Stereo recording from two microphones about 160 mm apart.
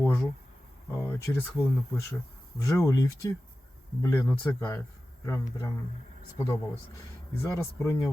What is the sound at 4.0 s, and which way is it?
Speech, 15° left (ahead or behind).